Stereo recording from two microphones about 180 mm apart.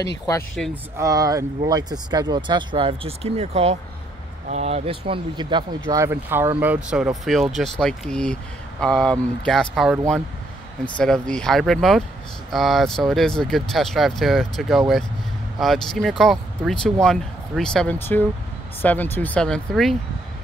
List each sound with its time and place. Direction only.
0.6 s speech: 5° left (ahead or behind)
0.9 s speech: 20° right (ahead or behind); by 20.0 s centre (ahead or behind)